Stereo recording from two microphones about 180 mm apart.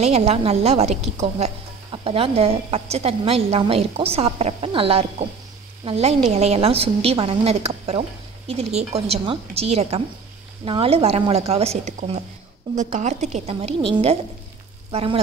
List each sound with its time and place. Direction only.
0.0 s a woman's voice: 35° right (ahead or behind)